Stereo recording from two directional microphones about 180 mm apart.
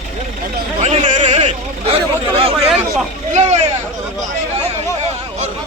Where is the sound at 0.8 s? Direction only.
40° right (ahead or behind).